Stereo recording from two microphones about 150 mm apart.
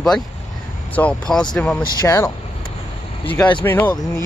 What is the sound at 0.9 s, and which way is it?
Speech, 5° left (ahead or behind).